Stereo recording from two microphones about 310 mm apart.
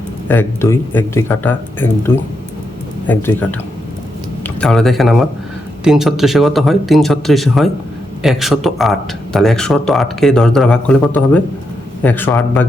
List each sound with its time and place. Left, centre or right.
0.3 s speech: centre
4.4 s speech: centre